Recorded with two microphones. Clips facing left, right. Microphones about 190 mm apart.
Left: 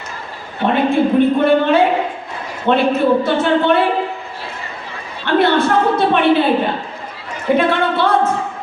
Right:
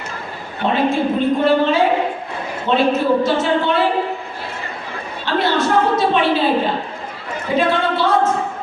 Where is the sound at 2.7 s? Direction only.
60° left (ahead or behind).